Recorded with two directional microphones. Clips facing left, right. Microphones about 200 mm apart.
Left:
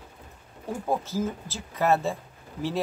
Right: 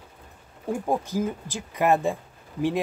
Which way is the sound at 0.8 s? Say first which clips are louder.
Right 1 dB; 15° right (ahead or behind).